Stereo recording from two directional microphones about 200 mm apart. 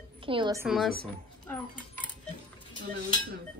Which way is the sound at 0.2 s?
25° right (ahead or behind).